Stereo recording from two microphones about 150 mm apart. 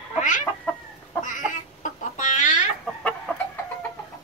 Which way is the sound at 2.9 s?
Centre (ahead or behind).